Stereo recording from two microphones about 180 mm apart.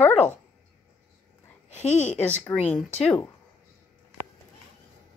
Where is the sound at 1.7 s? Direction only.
40° left (ahead or behind).